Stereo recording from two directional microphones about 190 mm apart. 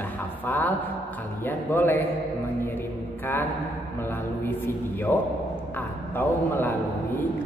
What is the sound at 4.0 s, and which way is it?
A man's voice, 10° left (ahead or behind).